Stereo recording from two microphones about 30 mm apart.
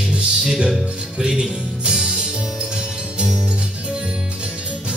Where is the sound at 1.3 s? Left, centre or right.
Right.